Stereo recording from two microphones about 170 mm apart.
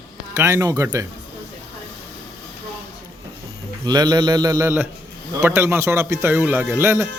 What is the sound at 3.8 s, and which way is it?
A man's voice, 25° right (ahead or behind).